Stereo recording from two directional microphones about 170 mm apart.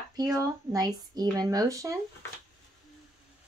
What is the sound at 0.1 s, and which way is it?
Speech, 20° right (ahead or behind).